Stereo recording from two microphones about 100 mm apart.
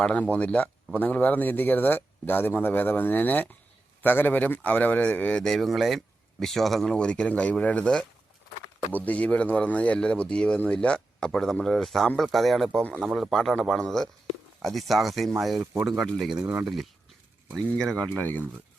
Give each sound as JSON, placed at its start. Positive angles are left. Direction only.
{"t": 0.0, "sound": "speech", "side_deg": 10}
{"t": 5.4, "sound": "speech", "side_deg": 5}
{"t": 13.0, "sound": "speech", "side_deg": -10}
{"t": 13.3, "sound": "speech", "side_deg": 0}
{"t": 16.3, "sound": "speech", "side_deg": -10}
{"t": 17.5, "sound": "speech", "side_deg": 5}